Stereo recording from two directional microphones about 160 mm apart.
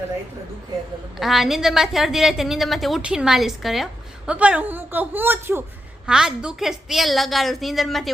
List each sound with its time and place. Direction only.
1.1 s a woman's voice: centre (ahead or behind)